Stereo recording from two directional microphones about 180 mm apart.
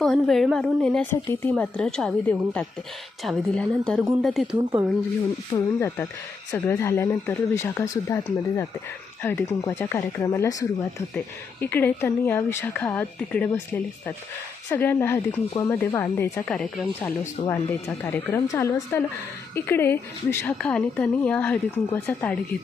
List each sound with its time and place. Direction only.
0.0 s a woman's voice: centre (ahead or behind)
4.5 s speech: 25° right (ahead or behind)
5.5 s a woman's voice: 15° left (ahead or behind)